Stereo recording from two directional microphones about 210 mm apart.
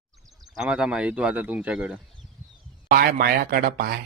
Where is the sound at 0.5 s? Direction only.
5° right (ahead or behind).